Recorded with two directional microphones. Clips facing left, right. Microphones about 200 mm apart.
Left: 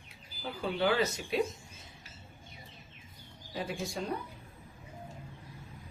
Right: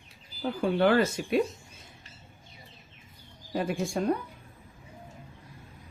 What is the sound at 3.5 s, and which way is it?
Speech, 50° right (ahead or behind).